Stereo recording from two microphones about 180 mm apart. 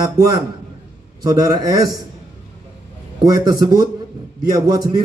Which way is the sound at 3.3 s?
20° right (ahead or behind).